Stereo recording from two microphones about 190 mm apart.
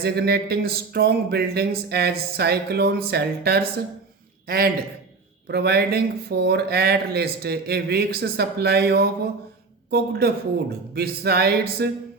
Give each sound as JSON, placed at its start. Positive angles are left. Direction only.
{"t": 0.0, "sound": "a man's voice", "side_deg": -55}